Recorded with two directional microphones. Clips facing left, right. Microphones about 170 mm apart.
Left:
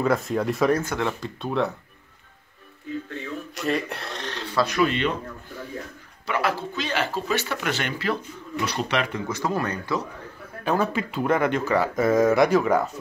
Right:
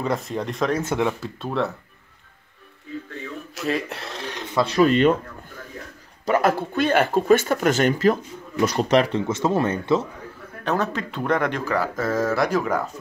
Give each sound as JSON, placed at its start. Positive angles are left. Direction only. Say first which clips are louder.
{"t": 0.0, "sound": "speech", "louder": "left 3 dB", "side_deg": 0}
{"t": 0.8, "sound": "speech", "louder": "right 4 dB", "side_deg": -15}
{"t": 3.5, "sound": "speech", "louder": "right 1 dB", "side_deg": 0}
{"t": 4.4, "sound": "a sound", "louder": "right 2 dB", "side_deg": -20}
{"t": 4.6, "sound": "speech", "louder": "right 10 dB", "side_deg": -40}
{"t": 6.2, "sound": "speech", "louder": "right 6 dB", "side_deg": -45}
{"t": 10.6, "sound": "speech", "louder": "left 1 dB", "side_deg": 5}
{"t": 12.0, "sound": "speech", "louder": "left 6 dB", "side_deg": 15}
{"t": 12.5, "sound": "speech", "louder": "left 3 dB", "side_deg": 5}